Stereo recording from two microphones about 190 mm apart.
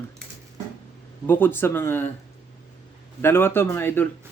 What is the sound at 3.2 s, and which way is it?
Speech, 10° left (ahead or behind).